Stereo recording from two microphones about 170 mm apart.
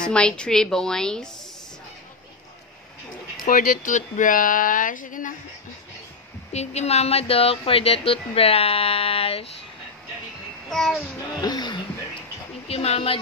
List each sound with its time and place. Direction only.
0.0 s a woman's voice: 5° left (ahead or behind)
3.4 s speech: 55° left (ahead or behind)
6.5 s speech: 40° left (ahead or behind)
10.7 s a woman's voice: 5° left (ahead or behind)
11.4 s speech: 25° left (ahead or behind)
12.6 s speech: 35° left (ahead or behind)